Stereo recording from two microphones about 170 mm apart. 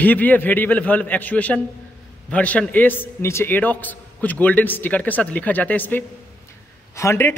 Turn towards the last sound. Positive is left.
turn(degrees=15)  # may be behind; listen again after turning